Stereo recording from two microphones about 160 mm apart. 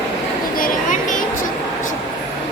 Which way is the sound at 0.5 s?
55° left (ahead or behind).